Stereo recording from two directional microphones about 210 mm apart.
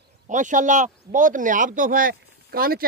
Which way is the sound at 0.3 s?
35° right (ahead or behind).